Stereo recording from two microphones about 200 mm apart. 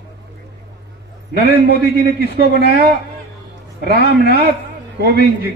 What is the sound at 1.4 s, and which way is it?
A man's voice, 55° right (ahead or behind).